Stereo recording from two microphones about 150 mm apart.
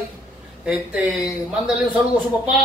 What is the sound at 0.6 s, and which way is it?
Speech, 10° right (ahead or behind).